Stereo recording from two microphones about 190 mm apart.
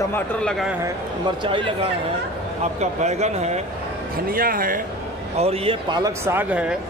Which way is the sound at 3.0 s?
35° right (ahead or behind).